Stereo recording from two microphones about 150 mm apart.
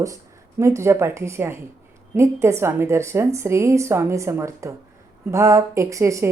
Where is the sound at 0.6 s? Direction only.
20° right (ahead or behind).